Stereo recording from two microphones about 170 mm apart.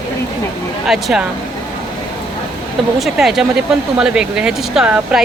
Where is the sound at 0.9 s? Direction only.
Centre (ahead or behind).